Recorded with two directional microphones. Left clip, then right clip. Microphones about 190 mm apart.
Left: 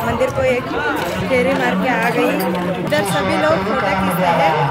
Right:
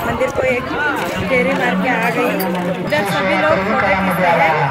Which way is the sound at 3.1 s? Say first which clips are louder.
Right 3 dB; 35° right (ahead or behind).